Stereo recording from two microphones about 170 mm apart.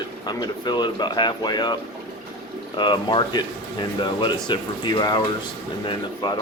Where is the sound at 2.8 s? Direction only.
25° left (ahead or behind).